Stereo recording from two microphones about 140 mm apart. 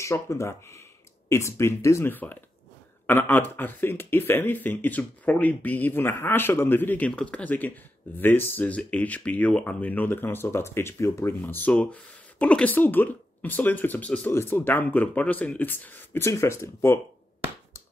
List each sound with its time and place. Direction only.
0.0 s speech: 20° left (ahead or behind)